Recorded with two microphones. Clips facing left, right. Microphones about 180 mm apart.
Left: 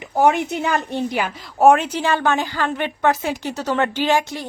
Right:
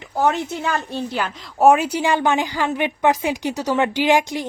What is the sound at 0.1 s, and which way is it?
A woman's voice, 15° left (ahead or behind).